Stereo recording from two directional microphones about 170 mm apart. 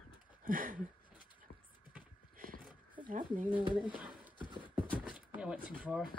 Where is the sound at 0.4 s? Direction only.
55° right (ahead or behind).